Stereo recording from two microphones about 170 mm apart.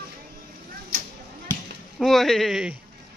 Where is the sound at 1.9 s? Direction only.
Centre (ahead or behind).